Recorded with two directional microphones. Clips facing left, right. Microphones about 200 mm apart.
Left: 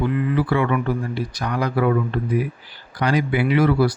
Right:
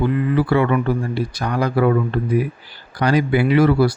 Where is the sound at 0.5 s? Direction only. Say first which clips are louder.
Right 3 dB; 35° right (ahead or behind).